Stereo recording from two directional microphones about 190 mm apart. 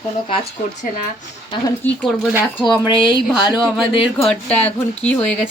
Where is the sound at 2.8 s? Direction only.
25° left (ahead or behind).